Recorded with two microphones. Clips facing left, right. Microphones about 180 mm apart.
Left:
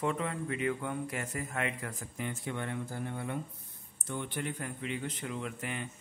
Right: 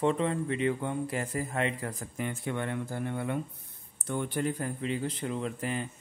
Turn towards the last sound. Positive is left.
turn(degrees=-35)  # may be behind; listen again after turning